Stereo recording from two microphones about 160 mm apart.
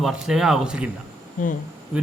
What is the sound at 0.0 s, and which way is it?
Speech, centre (ahead or behind).